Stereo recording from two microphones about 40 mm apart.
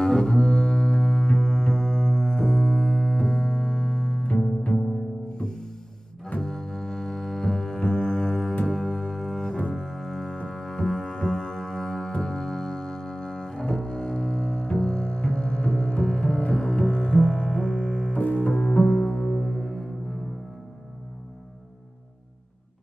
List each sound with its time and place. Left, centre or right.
0.0 s double bass: centre
5.4 s music: centre
8.7 s double bass: centre
11.1 s music: centre
12.1 s double bass: centre
18.1 s music: left
18.5 s music: left